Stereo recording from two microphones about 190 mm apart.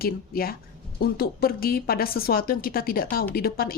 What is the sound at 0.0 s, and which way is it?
Speech, 50° left (ahead or behind).